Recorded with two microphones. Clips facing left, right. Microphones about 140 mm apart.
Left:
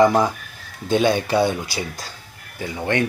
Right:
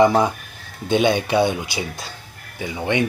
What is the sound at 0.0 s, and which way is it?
Speech, 20° right (ahead or behind).